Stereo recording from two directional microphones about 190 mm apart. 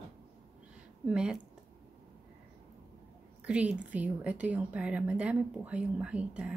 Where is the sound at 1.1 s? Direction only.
5° right (ahead or behind).